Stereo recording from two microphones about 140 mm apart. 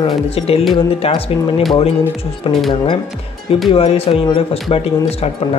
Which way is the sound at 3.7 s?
40° left (ahead or behind).